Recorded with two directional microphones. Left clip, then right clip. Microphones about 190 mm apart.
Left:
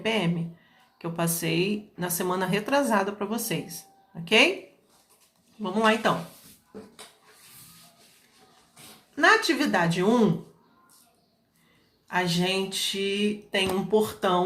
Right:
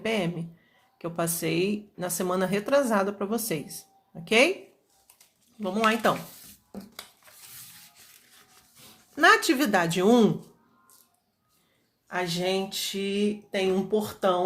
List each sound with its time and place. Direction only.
0.0 s speech: 35° right (ahead or behind)
5.6 s speech: 35° right (ahead or behind)
9.1 s speech: 40° right (ahead or behind)
12.0 s speech: 35° right (ahead or behind)